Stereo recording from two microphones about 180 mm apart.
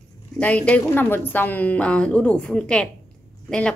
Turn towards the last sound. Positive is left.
turn(degrees=5)  # may be behind; listen again after turning